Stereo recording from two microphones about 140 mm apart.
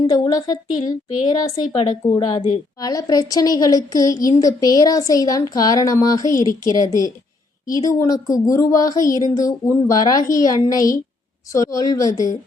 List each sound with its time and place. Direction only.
0.1 s a woman's voice: 30° left (ahead or behind)